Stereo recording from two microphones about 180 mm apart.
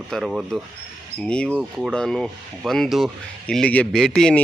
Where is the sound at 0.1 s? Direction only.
Centre (ahead or behind).